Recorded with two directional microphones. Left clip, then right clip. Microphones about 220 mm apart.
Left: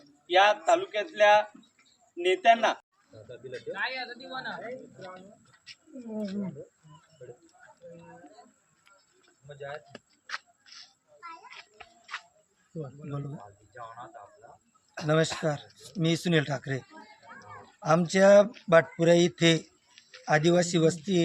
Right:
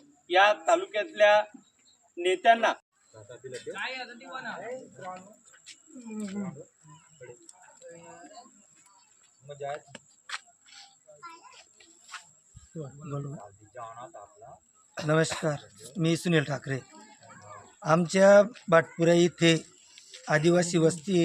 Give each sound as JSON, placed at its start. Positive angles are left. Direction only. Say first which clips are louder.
{"t": 0.3, "sound": "speech", "louder": "even", "side_deg": 0}
{"t": 3.8, "sound": "speech", "louder": "left 4 dB", "side_deg": 40}
{"t": 9.5, "sound": "speech", "louder": "right 4 dB", "side_deg": -40}
{"t": 9.7, "sound": "a sound", "louder": "right 2 dB", "side_deg": 5}
{"t": 15.0, "sound": "speech", "louder": "even", "side_deg": 0}